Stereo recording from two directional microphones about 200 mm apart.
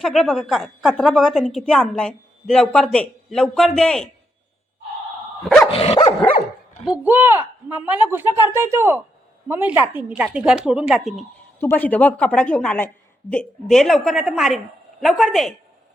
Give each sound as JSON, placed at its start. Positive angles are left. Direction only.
{"t": 0.0, "sound": "a woman's voice", "side_deg": 0}
{"t": 5.7, "sound": "dog", "side_deg": 30}
{"t": 6.8, "sound": "a woman's voice", "side_deg": -5}